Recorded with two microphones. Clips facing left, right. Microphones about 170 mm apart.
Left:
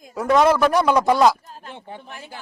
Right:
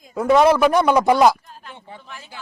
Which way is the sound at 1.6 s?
50° left (ahead or behind).